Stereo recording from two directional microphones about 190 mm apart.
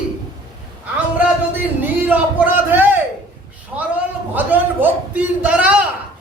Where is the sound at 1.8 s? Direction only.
10° right (ahead or behind).